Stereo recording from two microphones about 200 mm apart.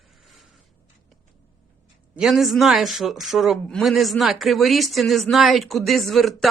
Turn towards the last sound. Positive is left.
turn(degrees=0)  # may be behind; listen again after turning